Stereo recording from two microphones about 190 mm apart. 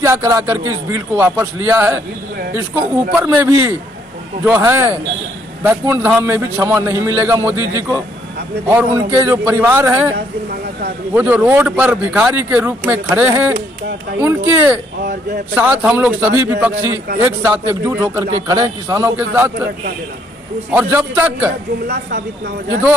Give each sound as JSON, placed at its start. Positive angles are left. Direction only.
{"t": 0.0, "sound": "a man's voice", "side_deg": -15}
{"t": 3.2, "sound": "a man's voice", "side_deg": -10}
{"t": 10.1, "sound": "speech", "side_deg": -60}
{"t": 11.1, "sound": "a man's voice", "side_deg": -5}
{"t": 20.7, "sound": "a man's voice", "side_deg": -10}